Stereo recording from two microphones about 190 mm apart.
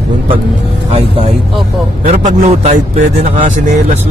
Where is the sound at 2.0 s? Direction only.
35° right (ahead or behind).